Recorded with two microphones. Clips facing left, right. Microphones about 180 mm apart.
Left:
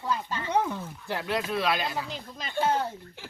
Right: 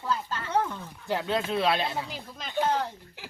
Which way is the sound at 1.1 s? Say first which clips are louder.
Right 2 dB; 20° right (ahead or behind).